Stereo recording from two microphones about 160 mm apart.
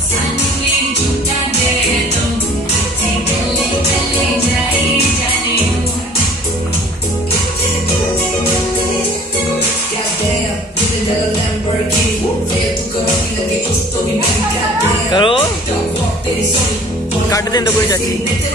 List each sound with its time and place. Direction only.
15.1 s music: 35° left (ahead or behind)
17.3 s speech: 20° left (ahead or behind)